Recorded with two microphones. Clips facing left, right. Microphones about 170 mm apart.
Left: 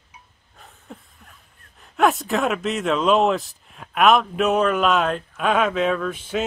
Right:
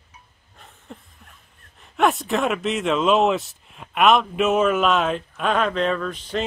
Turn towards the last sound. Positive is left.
turn(degrees=5)  # may be behind; listen again after turning